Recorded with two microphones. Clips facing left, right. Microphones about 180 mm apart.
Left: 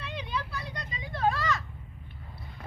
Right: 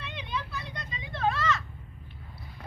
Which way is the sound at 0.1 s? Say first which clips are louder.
Left 2 dB; 35° left (ahead or behind).